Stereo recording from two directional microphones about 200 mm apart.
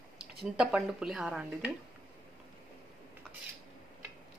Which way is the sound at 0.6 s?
5° right (ahead or behind).